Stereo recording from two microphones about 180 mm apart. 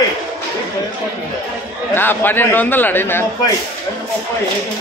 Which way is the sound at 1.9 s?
10° left (ahead or behind).